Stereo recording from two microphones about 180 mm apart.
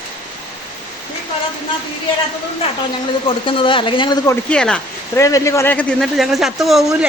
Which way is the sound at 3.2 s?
30° left (ahead or behind).